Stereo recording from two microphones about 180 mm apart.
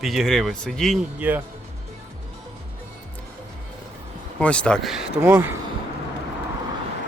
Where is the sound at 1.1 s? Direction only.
10° right (ahead or behind).